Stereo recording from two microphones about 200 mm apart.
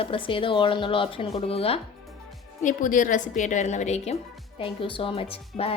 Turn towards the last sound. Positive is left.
turn(degrees=30)  # may be behind; listen again after turning